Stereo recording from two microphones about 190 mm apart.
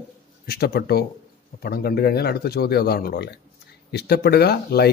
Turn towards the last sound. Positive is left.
turn(degrees=55)  # may be behind; listen again after turning